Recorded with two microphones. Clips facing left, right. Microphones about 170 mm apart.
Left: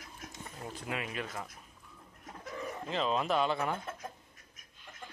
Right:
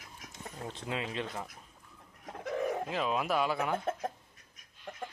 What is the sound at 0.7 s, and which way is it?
Speech, 25° right (ahead or behind).